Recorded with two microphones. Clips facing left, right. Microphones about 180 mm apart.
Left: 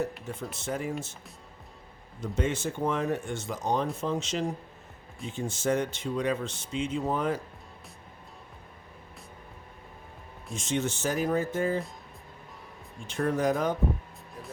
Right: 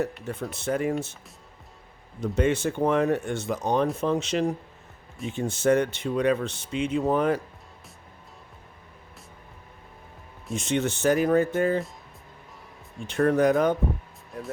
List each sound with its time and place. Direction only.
0.3 s speech: 65° right (ahead or behind)
2.3 s speech: 65° right (ahead or behind)
10.5 s speech: 65° right (ahead or behind)
13.1 s speech: 65° right (ahead or behind)